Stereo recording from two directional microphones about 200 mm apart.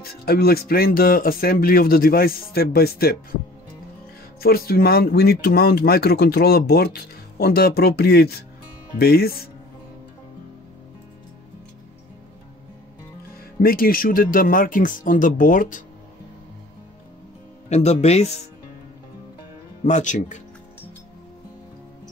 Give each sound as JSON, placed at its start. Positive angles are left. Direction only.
{"t": 0.0, "sound": "speech", "side_deg": 50}
{"t": 4.4, "sound": "speech", "side_deg": 50}
{"t": 13.6, "sound": "speech", "side_deg": 45}
{"t": 17.6, "sound": "speech", "side_deg": 35}
{"t": 19.8, "sound": "speech", "side_deg": 35}